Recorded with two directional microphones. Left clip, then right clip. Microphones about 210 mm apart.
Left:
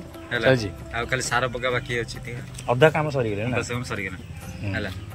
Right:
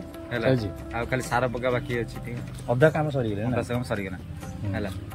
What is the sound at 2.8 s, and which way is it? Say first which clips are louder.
Speech: left 3 dB; centre (ahead or behind).